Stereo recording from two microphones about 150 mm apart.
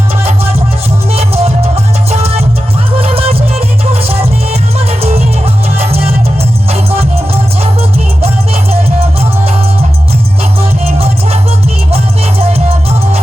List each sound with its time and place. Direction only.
1.1 s music: 45° right (ahead or behind)
4.9 s music: 45° right (ahead or behind)
10.6 s music: 40° right (ahead or behind)
12.4 s music: 40° right (ahead or behind)